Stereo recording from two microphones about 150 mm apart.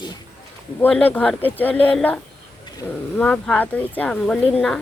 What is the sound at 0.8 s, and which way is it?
Speech, 10° left (ahead or behind).